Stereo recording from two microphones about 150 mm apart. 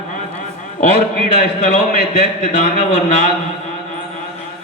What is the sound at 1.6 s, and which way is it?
A man's voice, 55° left (ahead or behind).